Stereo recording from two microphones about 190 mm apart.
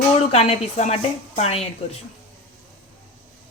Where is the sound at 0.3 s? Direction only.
30° left (ahead or behind).